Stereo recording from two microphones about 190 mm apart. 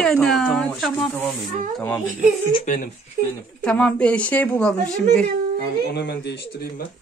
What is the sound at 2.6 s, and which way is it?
Speech, 45° left (ahead or behind).